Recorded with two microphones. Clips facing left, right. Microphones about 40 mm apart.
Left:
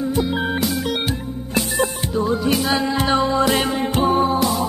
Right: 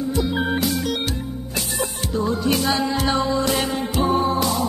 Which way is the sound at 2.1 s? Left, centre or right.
Centre.